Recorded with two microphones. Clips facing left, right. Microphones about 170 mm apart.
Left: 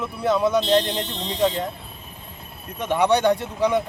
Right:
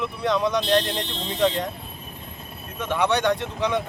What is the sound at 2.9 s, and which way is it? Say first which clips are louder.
Speech: left 3 dB; 10° left (ahead or behind).